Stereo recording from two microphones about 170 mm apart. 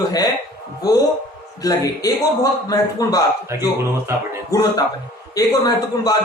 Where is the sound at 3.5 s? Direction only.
15° right (ahead or behind).